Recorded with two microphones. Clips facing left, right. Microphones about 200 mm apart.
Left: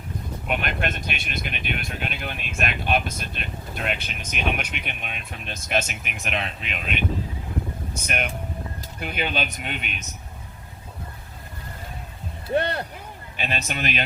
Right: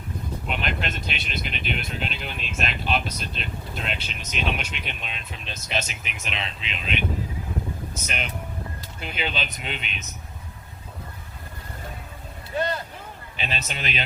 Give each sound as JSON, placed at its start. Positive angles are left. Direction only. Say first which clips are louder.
{"t": 0.4, "sound": "speech", "louder": "left 3 dB", "side_deg": 55}
{"t": 8.0, "sound": "speech", "louder": "left 5 dB", "side_deg": 55}
{"t": 12.5, "sound": "speech", "louder": "left 3 dB", "side_deg": 65}
{"t": 13.3, "sound": "speech", "louder": "left 3 dB", "side_deg": 50}